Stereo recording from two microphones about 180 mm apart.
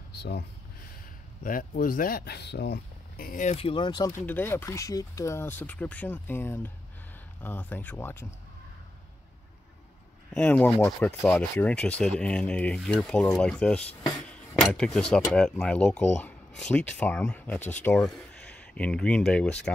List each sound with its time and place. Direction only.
0.2 s speech: 65° left (ahead or behind)
1.4 s speech: 50° left (ahead or behind)
3.5 s speech: 30° left (ahead or behind)
4.3 s speech: 10° left (ahead or behind)
10.3 s speech: 10° left (ahead or behind)